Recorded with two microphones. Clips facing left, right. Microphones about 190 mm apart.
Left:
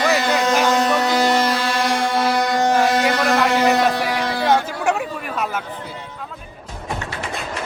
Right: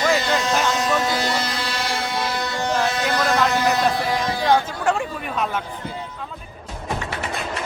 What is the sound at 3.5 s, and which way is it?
Speech, 70° left (ahead or behind).